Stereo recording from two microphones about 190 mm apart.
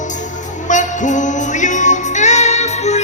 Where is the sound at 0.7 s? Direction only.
40° left (ahead or behind).